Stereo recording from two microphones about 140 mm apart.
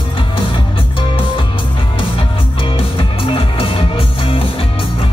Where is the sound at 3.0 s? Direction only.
40° left (ahead or behind).